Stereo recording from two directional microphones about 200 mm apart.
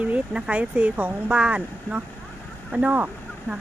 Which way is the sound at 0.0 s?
5° right (ahead or behind).